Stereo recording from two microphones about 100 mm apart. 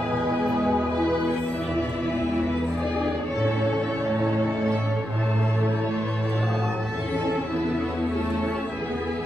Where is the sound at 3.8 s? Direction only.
30° right (ahead or behind).